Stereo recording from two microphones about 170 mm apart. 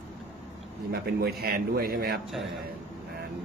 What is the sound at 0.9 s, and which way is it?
A man's voice, 65° right (ahead or behind).